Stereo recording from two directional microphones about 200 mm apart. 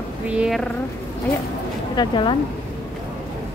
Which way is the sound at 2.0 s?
25° left (ahead or behind).